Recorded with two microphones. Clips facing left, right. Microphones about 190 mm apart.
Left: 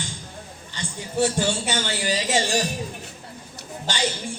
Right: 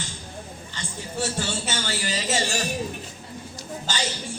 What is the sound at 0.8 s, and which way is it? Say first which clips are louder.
A man's voice: left 7 dB; 15° left (ahead or behind).